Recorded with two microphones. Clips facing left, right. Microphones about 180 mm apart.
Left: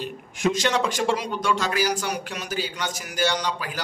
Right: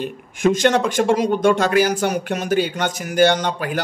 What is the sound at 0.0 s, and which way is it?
Speech, 55° right (ahead or behind).